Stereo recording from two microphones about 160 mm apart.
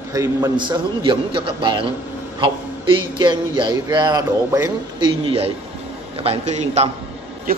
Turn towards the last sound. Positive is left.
turn(degrees=-65)  # may be behind; listen again after turning